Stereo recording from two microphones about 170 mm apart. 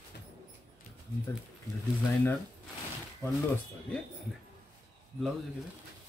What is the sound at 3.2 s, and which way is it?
Speech, 20° left (ahead or behind).